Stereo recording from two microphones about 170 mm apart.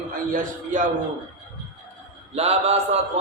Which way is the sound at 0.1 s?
55° right (ahead or behind).